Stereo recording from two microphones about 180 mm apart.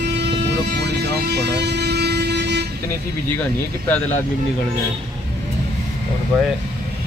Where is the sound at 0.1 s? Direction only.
70° right (ahead or behind).